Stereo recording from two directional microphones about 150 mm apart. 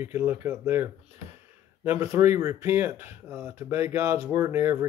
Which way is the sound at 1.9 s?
20° right (ahead or behind).